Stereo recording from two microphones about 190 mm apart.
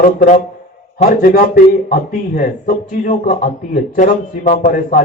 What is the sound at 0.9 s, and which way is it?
A man's voice, 40° left (ahead or behind).